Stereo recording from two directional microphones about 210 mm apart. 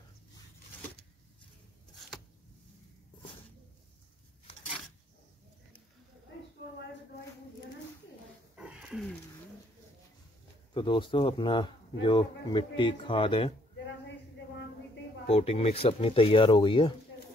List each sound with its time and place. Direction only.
8.5 s a sound: 5° right (ahead or behind)
10.7 s speech: 25° left (ahead or behind)
15.2 s speech: 30° left (ahead or behind)